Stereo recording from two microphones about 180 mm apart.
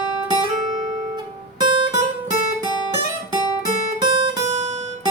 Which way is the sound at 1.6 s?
25° right (ahead or behind).